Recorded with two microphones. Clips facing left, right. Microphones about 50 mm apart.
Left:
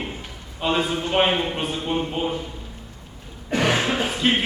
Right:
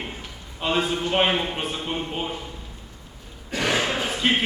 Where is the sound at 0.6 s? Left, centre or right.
Centre.